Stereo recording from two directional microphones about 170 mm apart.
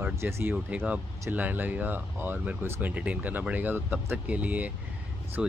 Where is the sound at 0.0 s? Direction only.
15° right (ahead or behind).